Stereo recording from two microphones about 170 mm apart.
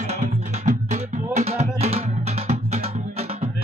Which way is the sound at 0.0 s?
40° right (ahead or behind).